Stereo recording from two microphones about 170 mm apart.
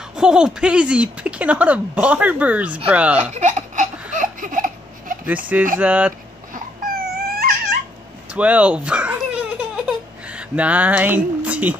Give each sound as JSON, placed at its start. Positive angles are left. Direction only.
{"t": 0.1, "sound": "speech", "side_deg": -5}
{"t": 3.2, "sound": "speech", "side_deg": -45}
{"t": 4.2, "sound": "giggle", "side_deg": -50}
{"t": 5.8, "sound": "speech", "side_deg": -10}
{"t": 6.5, "sound": "baby cry", "side_deg": -60}
{"t": 8.3, "sound": "baby laughter", "side_deg": -10}